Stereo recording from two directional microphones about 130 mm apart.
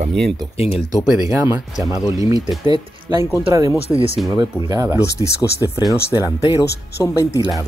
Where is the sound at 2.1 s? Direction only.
25° right (ahead or behind).